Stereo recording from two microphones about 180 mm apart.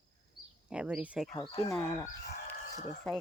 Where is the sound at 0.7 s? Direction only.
5° right (ahead or behind).